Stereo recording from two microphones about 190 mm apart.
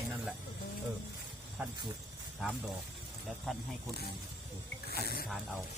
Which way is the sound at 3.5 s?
Centre (ahead or behind).